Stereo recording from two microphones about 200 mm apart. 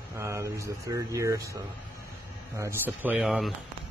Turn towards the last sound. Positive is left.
turn(degrees=0)  # may be behind; listen again after turning